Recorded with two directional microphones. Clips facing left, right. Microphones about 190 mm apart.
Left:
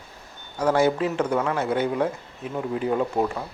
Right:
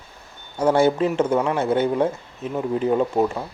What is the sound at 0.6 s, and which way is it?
Speech, 25° right (ahead or behind).